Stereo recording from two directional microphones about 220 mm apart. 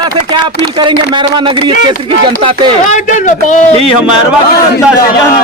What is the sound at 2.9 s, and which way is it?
Speech, 35° left (ahead or behind).